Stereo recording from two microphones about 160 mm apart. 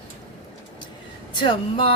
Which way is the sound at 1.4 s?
30° left (ahead or behind).